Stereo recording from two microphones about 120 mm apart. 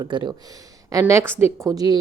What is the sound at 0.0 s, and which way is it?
Speech, 40° right (ahead or behind).